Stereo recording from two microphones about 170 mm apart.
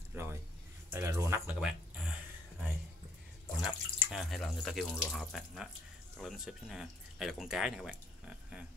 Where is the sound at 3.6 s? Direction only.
Centre (ahead or behind).